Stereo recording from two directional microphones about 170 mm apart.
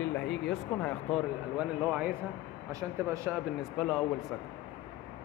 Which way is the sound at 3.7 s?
Centre (ahead or behind).